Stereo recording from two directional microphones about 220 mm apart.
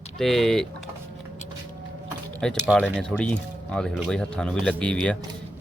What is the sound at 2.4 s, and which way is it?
Speech, 5° left (ahead or behind).